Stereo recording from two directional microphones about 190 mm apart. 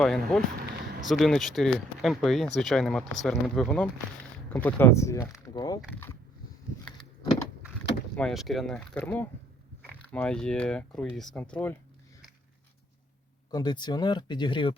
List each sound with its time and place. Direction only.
0.0 s speech: centre (ahead or behind)
8.1 s speech: centre (ahead or behind)
13.5 s speech: 20° left (ahead or behind)